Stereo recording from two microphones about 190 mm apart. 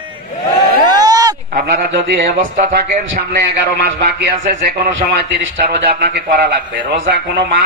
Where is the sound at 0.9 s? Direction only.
20° right (ahead or behind).